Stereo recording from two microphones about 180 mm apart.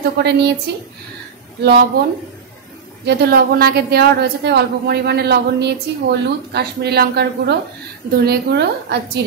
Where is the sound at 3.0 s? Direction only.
65° right (ahead or behind).